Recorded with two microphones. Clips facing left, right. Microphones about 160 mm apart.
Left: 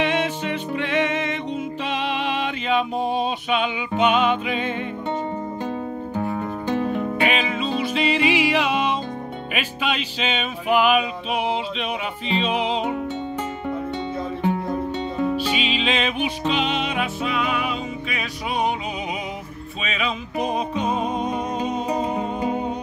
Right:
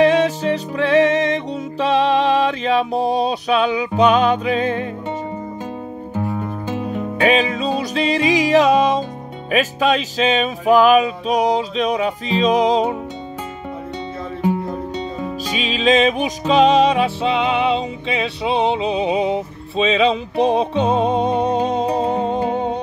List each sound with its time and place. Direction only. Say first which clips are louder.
0.0 s music: right 8 dB; 40° right (ahead or behind)
6.1 s music: right 3 dB; 5° right (ahead or behind)
7.2 s music: right 6 dB; 40° right (ahead or behind)
15.4 s music: right 4 dB; 40° right (ahead or behind)